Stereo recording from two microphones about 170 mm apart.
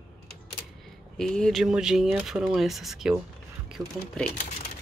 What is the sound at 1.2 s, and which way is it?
Speech, 5° left (ahead or behind).